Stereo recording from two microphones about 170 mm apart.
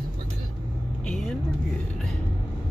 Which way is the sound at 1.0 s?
5° left (ahead or behind).